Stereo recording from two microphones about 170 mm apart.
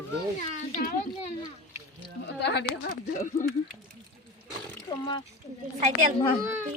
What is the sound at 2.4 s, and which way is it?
Speech, 85° left.